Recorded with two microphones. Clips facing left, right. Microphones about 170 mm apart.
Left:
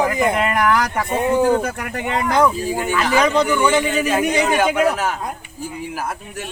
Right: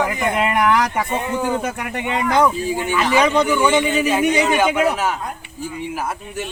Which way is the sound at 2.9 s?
Centre (ahead or behind).